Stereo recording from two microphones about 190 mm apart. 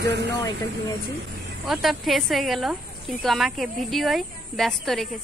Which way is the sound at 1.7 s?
Centre (ahead or behind).